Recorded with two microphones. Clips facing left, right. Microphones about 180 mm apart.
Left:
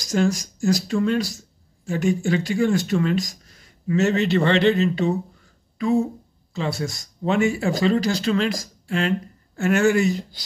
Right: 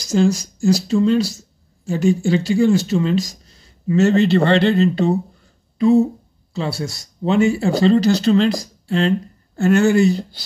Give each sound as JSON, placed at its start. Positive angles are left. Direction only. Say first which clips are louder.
{"t": 0.1, "sound": "speech", "louder": "right 4 dB", "side_deg": -25}